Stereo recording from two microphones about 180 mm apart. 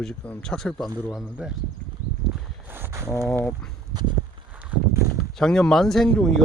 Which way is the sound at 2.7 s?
10° right (ahead or behind).